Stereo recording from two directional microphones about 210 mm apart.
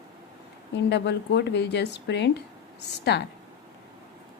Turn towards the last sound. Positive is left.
turn(degrees=55)  # may be behind; listen again after turning